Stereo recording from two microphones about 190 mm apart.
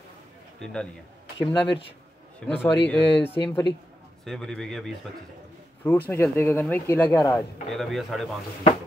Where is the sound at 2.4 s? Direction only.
5° left (ahead or behind).